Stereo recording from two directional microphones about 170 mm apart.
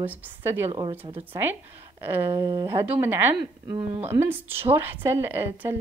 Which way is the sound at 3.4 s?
30° right (ahead or behind).